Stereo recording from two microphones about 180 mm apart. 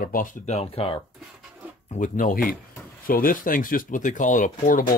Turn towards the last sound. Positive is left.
turn(degrees=45)  # may be behind; listen again after turning